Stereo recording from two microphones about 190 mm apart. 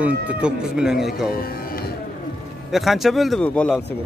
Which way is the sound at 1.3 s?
50° left (ahead or behind).